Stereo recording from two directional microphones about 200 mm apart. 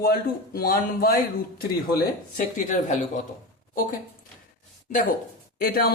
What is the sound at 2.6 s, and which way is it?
Speech, 40° left (ahead or behind).